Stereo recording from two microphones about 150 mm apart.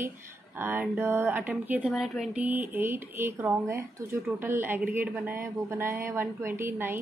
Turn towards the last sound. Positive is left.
turn(degrees=-15)  # may be behind; listen again after turning